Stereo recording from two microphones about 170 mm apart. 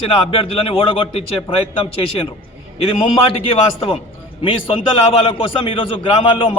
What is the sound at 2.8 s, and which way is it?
A man's voice, 35° left (ahead or behind).